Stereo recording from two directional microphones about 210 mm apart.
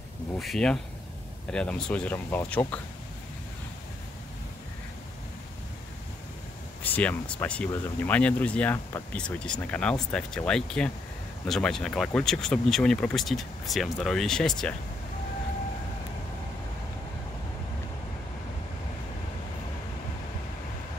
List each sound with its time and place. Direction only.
0.4 s speech: centre (ahead or behind)
6.8 s speech: 5° left (ahead or behind)